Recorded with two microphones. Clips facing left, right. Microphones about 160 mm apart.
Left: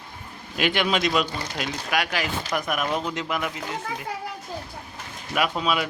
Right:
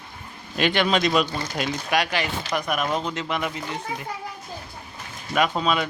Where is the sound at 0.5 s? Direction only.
5° left (ahead or behind).